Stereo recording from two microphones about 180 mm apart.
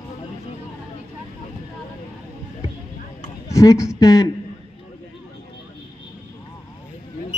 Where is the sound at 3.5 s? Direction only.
15° left (ahead or behind).